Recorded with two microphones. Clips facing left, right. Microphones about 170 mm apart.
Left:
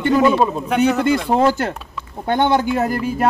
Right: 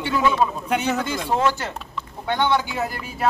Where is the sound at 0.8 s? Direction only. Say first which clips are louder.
Left 10 dB; 65° left (ahead or behind).